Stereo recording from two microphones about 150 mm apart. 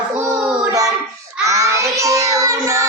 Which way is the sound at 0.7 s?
25° right (ahead or behind).